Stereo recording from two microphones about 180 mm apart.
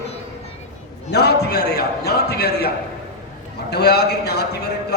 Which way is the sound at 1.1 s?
65° left (ahead or behind).